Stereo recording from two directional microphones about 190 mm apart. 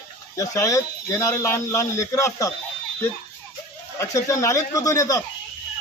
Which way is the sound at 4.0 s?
15° left (ahead or behind).